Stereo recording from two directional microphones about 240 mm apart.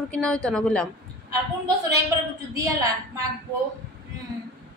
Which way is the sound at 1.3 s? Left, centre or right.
Centre.